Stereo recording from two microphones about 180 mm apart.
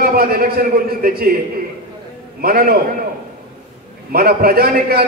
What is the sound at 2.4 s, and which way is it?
Speech, 55° right (ahead or behind).